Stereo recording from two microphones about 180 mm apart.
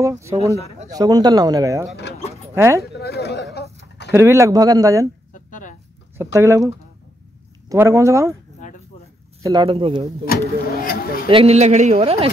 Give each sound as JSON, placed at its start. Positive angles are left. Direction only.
{"t": 0.0, "sound": "speech", "side_deg": -15}
{"t": 2.8, "sound": "a sound", "side_deg": 60}
{"t": 4.1, "sound": "speech", "side_deg": -15}
{"t": 5.3, "sound": "a sound", "side_deg": 45}
{"t": 6.1, "sound": "speech", "side_deg": -15}
{"t": 8.6, "sound": "a sound", "side_deg": 45}
{"t": 9.4, "sound": "speech", "side_deg": -25}
{"t": 10.2, "sound": "speech", "side_deg": 55}
{"t": 11.2, "sound": "speech", "side_deg": -35}